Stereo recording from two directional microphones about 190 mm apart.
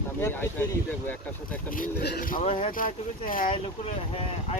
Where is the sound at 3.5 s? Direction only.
30° left (ahead or behind).